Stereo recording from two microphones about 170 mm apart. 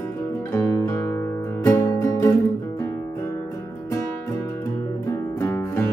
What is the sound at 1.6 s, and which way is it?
Music, 15° left (ahead or behind).